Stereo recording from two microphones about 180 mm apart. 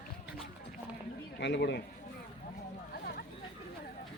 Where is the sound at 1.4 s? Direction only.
70° left (ahead or behind).